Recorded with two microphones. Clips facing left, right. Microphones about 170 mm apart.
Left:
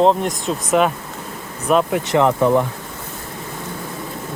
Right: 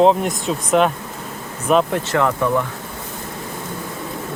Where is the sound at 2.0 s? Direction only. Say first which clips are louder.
Left 3 dB; 20° left (ahead or behind).